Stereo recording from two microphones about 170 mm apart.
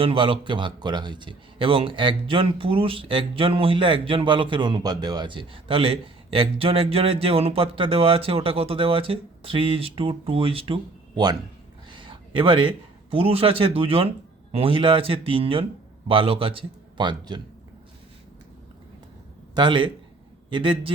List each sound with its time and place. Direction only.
0.0 s a man's voice: 30° right (ahead or behind)
19.5 s a man's voice: 30° right (ahead or behind)